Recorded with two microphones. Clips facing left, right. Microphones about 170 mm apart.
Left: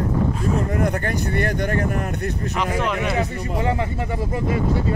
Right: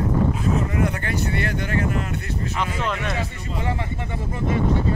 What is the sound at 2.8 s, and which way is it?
Speech, 5° left (ahead or behind).